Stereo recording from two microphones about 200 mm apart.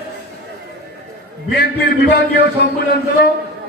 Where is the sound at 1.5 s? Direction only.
55° left (ahead or behind).